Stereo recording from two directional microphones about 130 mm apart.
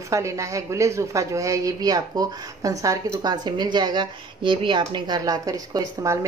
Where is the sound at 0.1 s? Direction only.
25° right (ahead or behind).